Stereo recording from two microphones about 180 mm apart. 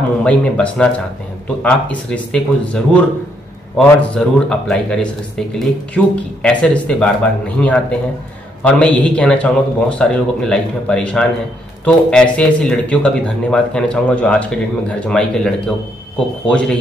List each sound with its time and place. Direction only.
0.2 s speech: 5° left (ahead or behind)